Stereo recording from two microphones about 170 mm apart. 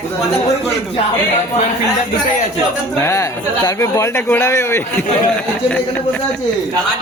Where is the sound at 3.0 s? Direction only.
15° left (ahead or behind).